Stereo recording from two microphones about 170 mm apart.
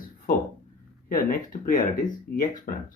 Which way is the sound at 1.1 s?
55° left (ahead or behind).